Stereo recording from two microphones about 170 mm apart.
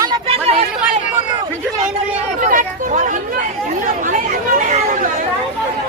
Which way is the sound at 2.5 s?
50° right (ahead or behind).